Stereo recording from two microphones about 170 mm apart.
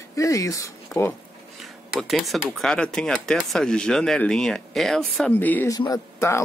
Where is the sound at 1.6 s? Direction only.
Centre (ahead or behind).